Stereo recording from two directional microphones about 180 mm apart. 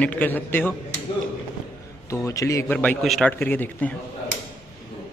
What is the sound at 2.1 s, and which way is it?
A man's voice, 15° left (ahead or behind).